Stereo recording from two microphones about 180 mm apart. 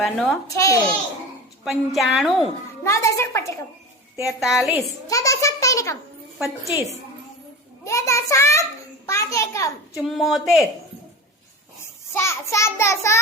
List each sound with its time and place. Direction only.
0.0 s a woman's voice: centre (ahead or behind)
0.5 s a child's voice: 15° left (ahead or behind)
1.6 s a woman's voice: centre (ahead or behind)
2.8 s a child's voice: 15° left (ahead or behind)
4.3 s a woman's voice: centre (ahead or behind)
4.9 s a child's voice: 20° left (ahead or behind)
7.9 s a child's voice: 15° left (ahead or behind)
9.9 s a woman's voice: centre (ahead or behind)
11.8 s a child's voice: 15° left (ahead or behind)